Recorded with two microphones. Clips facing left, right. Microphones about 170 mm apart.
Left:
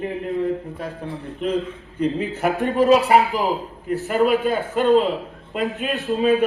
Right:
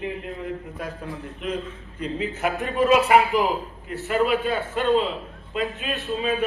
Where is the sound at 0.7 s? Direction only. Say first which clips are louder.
Left 3 dB; 30° left (ahead or behind); by 6.5 s 50° left (ahead or behind).